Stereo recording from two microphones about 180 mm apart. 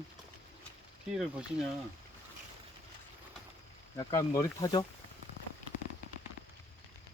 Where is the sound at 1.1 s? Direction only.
Centre (ahead or behind).